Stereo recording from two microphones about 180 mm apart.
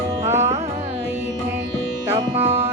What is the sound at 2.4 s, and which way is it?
Music, 35° right (ahead or behind).